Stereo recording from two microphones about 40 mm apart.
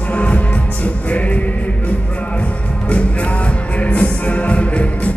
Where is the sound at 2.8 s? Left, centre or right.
Left.